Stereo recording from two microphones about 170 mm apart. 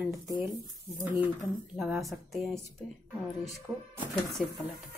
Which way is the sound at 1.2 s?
5° right (ahead or behind).